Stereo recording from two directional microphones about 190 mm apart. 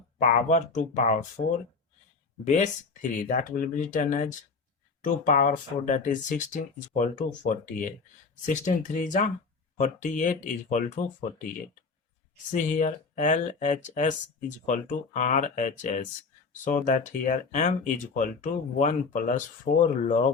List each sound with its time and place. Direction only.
0.2 s speech: 40° left (ahead or behind)
12.5 s speech: 40° left (ahead or behind)